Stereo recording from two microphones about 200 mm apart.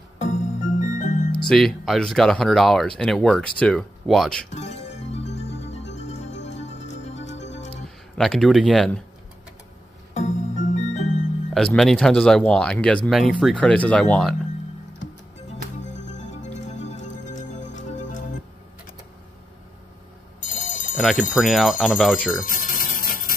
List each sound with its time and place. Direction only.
0.2 s music: 40° left (ahead or behind)
1.5 s speech: centre (ahead or behind)
4.5 s music: 35° left (ahead or behind)
8.2 s speech: centre (ahead or behind)
10.1 s music: 35° left (ahead or behind)
11.5 s speech: centre (ahead or behind)
16.2 s music: 35° left (ahead or behind)
20.4 s music: 40° left (ahead or behind)
21.0 s speech: centre (ahead or behind)
22.5 s a sound: 40° left (ahead or behind)